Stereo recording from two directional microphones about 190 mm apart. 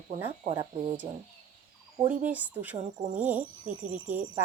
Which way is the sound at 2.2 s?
10° right (ahead or behind).